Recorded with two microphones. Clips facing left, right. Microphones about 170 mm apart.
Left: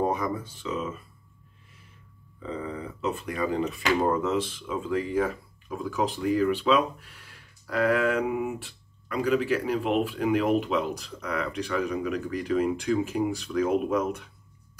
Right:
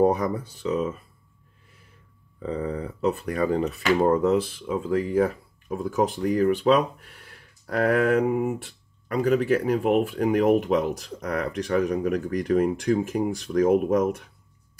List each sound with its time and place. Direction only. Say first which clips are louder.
0.0 s speech: right 6 dB; 35° right (ahead or behind)
2.4 s speech: right 5 dB; 40° right (ahead or behind)